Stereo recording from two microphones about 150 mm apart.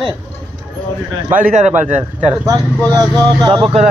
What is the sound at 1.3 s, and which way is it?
Speech, 50° right (ahead or behind).